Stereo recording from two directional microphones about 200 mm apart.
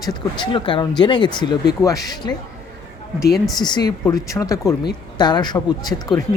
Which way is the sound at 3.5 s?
20° left (ahead or behind).